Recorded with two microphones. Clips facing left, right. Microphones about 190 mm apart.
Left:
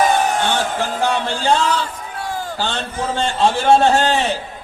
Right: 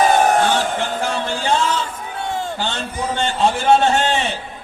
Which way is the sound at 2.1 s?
25° right (ahead or behind).